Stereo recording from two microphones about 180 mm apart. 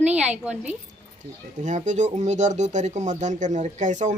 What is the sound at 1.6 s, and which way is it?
Speech, 40° right (ahead or behind).